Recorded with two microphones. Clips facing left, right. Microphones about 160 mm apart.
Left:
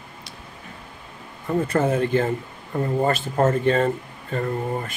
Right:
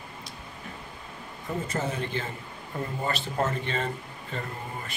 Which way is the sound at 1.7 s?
55° left (ahead or behind).